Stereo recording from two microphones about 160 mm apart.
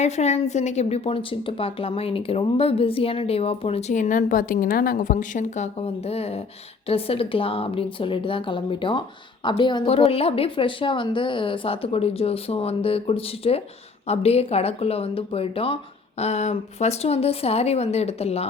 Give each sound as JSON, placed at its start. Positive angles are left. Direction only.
{"t": 0.0, "sound": "speech", "side_deg": 45}